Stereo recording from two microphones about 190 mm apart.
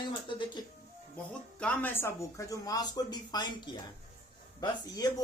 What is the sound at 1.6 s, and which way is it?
Speech, 10° left (ahead or behind).